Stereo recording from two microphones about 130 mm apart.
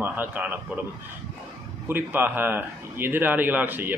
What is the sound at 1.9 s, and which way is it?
A man's voice, 15° right (ahead or behind).